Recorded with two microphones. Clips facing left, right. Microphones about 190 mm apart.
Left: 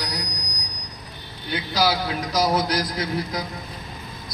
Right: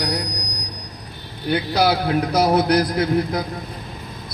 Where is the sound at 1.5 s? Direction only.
55° right (ahead or behind).